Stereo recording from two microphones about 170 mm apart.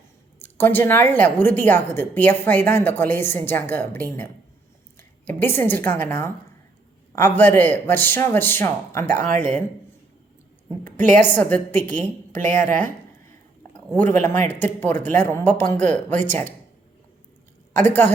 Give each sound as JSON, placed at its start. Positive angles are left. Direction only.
{"t": 0.3, "sound": "a woman's voice", "side_deg": 10}
{"t": 9.3, "sound": "speech", "side_deg": -45}
{"t": 11.2, "sound": "a woman's voice", "side_deg": 10}
{"t": 12.4, "sound": "speech", "side_deg": -50}
{"t": 13.7, "sound": "a woman's voice", "side_deg": 10}
{"t": 17.8, "sound": "a woman's voice", "side_deg": 10}